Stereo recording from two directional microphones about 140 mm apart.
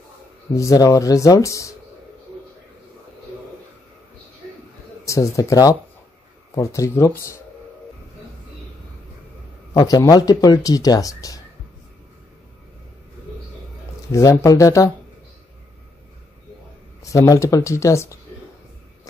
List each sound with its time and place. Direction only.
0.6 s speech: 25° left (ahead or behind)
5.0 s speech: 20° left (ahead or behind)
9.8 s speech: 25° left (ahead or behind)
14.1 s speech: 20° left (ahead or behind)
17.0 s speech: 25° left (ahead or behind)